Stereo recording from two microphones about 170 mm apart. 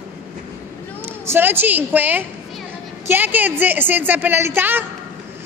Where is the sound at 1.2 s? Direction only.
15° right (ahead or behind).